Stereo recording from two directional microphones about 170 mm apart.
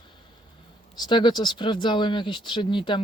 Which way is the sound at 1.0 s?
25° left (ahead or behind).